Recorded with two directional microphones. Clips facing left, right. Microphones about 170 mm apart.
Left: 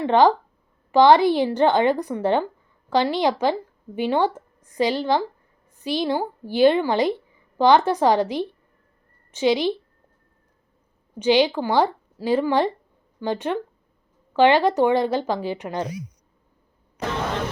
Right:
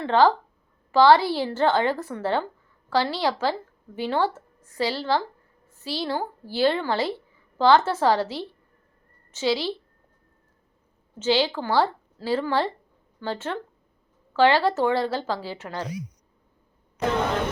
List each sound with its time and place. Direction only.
0.0 s a woman's voice: 15° left (ahead or behind)
11.2 s speech: 15° left (ahead or behind)